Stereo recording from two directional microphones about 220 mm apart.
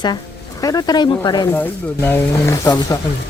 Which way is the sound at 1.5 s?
10° left (ahead or behind).